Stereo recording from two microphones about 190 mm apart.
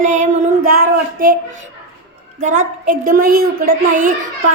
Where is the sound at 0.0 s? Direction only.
40° right (ahead or behind).